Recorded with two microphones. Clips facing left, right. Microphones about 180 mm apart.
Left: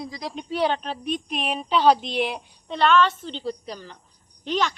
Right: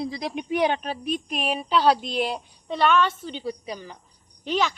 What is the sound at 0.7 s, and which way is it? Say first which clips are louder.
A woman's voice: even; 5° right (ahead or behind).